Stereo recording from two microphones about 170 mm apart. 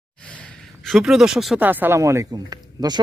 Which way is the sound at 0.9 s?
Centre (ahead or behind).